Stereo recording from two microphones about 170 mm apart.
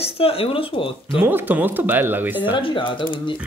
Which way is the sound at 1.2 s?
10° right (ahead or behind).